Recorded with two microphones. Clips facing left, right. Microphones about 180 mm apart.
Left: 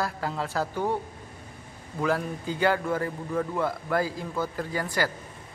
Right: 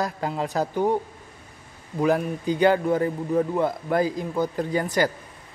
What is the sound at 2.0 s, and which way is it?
Speech, 20° right (ahead or behind).